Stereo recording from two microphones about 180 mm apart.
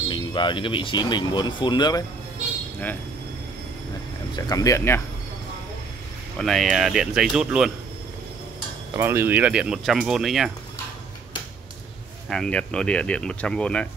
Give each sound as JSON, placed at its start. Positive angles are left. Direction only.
{"t": 0.1, "sound": "speech", "side_deg": 25}
{"t": 4.4, "sound": "speech", "side_deg": 20}
{"t": 6.3, "sound": "speech", "side_deg": 0}
{"t": 8.9, "sound": "speech", "side_deg": -15}
{"t": 12.3, "sound": "speech", "side_deg": 5}